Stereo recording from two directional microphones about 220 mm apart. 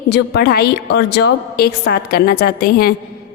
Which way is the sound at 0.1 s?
45° left (ahead or behind).